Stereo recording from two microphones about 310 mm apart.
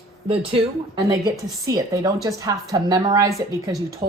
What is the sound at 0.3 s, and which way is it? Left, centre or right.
A woman's voice, centre.